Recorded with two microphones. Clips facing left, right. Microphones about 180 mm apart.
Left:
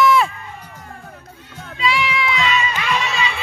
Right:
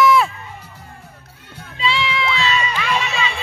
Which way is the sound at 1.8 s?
30° right (ahead or behind).